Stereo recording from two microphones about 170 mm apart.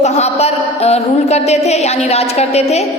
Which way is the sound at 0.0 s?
40° left (ahead or behind).